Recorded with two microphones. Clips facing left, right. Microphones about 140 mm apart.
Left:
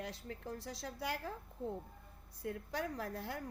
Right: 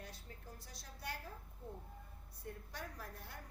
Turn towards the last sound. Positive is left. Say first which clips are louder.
# left 10 dB
turn(degrees=90)